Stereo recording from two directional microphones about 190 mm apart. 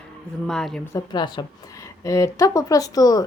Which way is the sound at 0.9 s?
25° left (ahead or behind).